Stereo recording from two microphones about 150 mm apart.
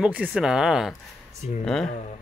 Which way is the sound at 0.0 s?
5° right (ahead or behind).